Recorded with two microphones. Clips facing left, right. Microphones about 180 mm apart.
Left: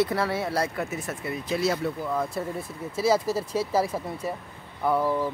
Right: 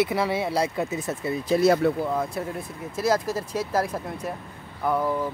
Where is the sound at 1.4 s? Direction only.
40° right (ahead or behind).